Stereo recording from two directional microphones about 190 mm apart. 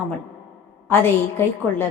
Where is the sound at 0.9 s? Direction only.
10° left (ahead or behind).